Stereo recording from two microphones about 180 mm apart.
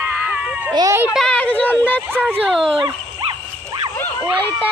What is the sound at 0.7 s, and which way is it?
Speech, 20° right (ahead or behind).